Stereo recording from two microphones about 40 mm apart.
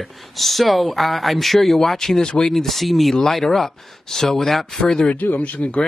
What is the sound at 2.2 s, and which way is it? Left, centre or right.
Speech, centre.